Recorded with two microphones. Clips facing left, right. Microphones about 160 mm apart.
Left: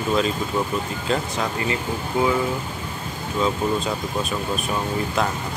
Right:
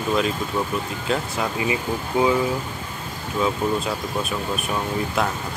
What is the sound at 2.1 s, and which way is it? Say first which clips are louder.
Speech: right 1 dB; 20° right (ahead or behind).